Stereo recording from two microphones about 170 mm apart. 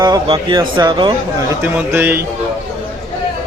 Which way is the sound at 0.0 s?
25° right (ahead or behind).